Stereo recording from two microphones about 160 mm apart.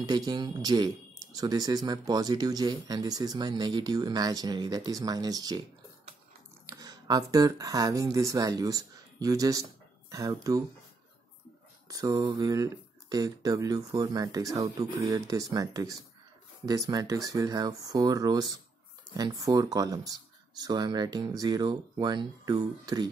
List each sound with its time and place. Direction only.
0.0 s speech: 25° right (ahead or behind)
6.6 s speech: 20° right (ahead or behind)
11.9 s speech: 25° right (ahead or behind)